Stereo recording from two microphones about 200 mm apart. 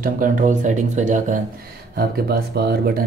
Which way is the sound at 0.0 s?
40° right (ahead or behind).